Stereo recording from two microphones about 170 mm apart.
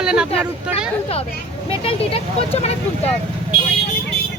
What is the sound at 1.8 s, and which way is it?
Speech, 35° left (ahead or behind).